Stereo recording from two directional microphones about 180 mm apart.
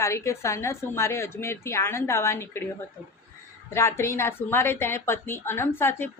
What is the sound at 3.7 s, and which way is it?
A woman's voice, 15° left (ahead or behind).